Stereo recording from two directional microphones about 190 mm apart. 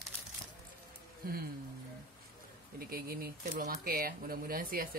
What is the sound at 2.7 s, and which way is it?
Speech, 50° right (ahead or behind).